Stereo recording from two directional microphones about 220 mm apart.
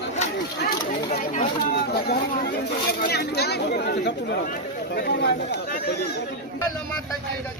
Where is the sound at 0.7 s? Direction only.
40° left (ahead or behind).